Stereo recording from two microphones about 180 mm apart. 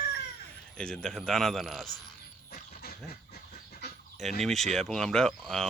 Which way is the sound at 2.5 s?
55° left (ahead or behind).